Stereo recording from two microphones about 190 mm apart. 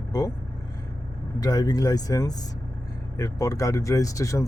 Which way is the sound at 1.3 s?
20° left (ahead or behind).